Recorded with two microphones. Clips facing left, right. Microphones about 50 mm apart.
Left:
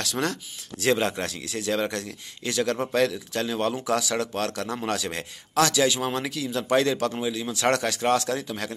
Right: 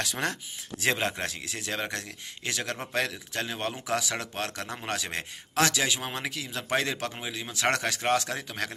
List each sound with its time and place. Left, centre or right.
0.0 s speech: centre; by 8.7 s right